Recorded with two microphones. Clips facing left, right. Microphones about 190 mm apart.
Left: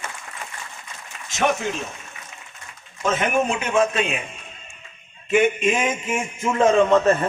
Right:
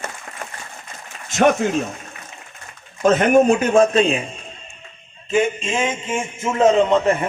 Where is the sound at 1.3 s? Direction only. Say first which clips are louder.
Right 6 dB; 45° right (ahead or behind).